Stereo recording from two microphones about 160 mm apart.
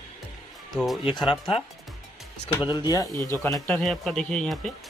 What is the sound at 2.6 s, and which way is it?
Speech, 25° left (ahead or behind).